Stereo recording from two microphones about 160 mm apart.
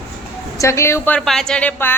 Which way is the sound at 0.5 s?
20° left (ahead or behind).